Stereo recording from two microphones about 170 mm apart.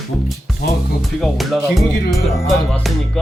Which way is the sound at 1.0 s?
Centre (ahead or behind).